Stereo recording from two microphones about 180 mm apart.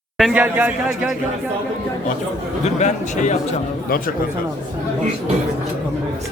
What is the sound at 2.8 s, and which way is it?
Speech, 40° left (ahead or behind).